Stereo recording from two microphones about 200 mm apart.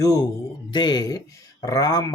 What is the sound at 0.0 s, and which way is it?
Speech, 15° left (ahead or behind).